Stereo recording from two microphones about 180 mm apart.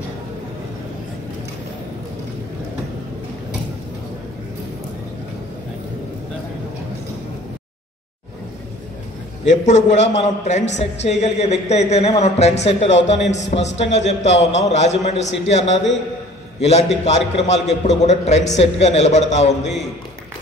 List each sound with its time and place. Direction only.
9.4 s a man's voice: 40° left (ahead or behind)